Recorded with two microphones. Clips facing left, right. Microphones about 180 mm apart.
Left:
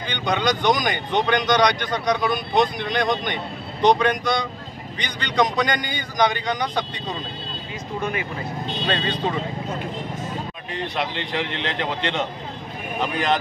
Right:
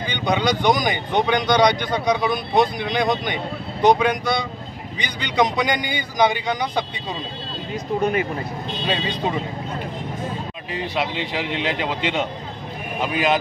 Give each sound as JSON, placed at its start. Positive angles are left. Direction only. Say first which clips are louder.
{"t": 0.0, "sound": "speech", "louder": "right 2 dB", "side_deg": -10}
{"t": 7.7, "sound": "speech", "louder": "right 6 dB", "side_deg": -40}
{"t": 8.8, "sound": "speech", "louder": "right 1 dB", "side_deg": -10}
{"t": 10.7, "sound": "a man's voice", "louder": "right 2 dB", "side_deg": -5}